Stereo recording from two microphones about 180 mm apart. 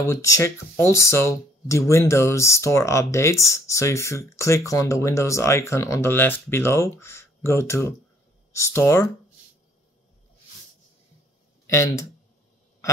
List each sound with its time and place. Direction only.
0.1 s speech: 15° left (ahead or behind)
11.6 s speech: 15° left (ahead or behind)